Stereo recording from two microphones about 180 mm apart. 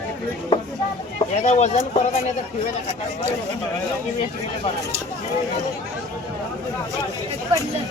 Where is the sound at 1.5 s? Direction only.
40° left (ahead or behind).